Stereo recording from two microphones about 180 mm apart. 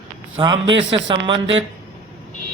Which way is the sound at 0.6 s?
90° right.